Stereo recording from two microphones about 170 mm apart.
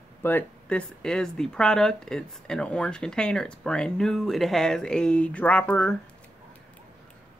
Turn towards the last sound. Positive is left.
turn(degrees=10)  # may be behind; listen again after turning